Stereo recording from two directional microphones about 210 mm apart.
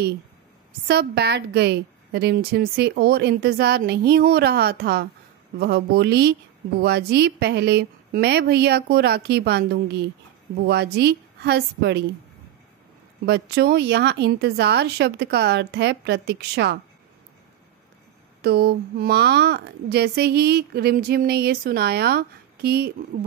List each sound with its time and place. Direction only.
0.8 s a woman's voice: 50° right (ahead or behind)
13.2 s a woman's voice: 50° right (ahead or behind)
18.4 s a woman's voice: 50° right (ahead or behind)